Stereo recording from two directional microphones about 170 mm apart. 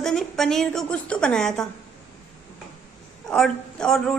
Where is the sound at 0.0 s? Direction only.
Centre (ahead or behind).